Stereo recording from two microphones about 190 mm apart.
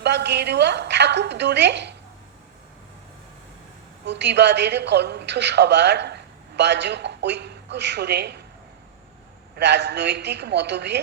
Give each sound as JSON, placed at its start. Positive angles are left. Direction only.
{"t": 0.0, "sound": "a woman's voice", "side_deg": -65}
{"t": 4.0, "sound": "a woman's voice", "side_deg": -65}
{"t": 9.6, "sound": "a woman's voice", "side_deg": -65}